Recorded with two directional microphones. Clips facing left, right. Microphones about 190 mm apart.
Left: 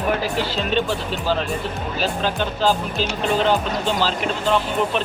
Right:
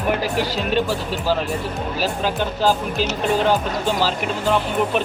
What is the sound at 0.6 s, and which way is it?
Speech, 10° right (ahead or behind).